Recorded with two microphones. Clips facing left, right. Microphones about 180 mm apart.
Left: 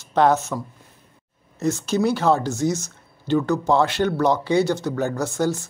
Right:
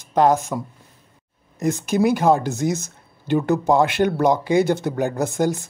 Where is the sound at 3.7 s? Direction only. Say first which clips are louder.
Right 2 dB; 15° right (ahead or behind).